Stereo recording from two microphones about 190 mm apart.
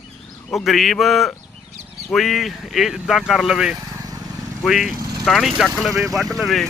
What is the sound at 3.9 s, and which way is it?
Vehicle, 20° right (ahead or behind).